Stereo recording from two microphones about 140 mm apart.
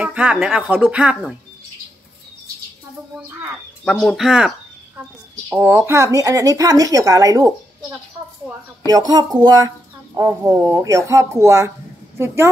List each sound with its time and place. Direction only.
0.0 s speech: 10° right (ahead or behind)
3.8 s speech: centre (ahead or behind)
5.5 s speech: 15° right (ahead or behind)
8.8 s speech: 25° right (ahead or behind)